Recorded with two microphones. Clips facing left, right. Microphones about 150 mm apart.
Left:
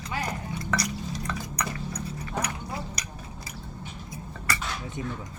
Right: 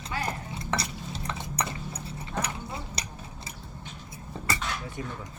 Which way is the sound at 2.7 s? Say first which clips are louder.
Left 2 dB; 25° right (ahead or behind).